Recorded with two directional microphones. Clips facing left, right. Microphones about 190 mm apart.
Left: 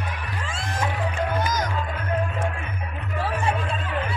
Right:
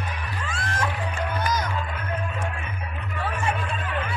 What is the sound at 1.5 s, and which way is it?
Music, 45° left (ahead or behind).